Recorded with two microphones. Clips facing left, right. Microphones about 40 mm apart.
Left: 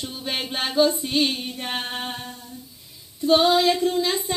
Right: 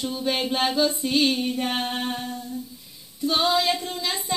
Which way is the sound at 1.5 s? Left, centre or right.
Centre.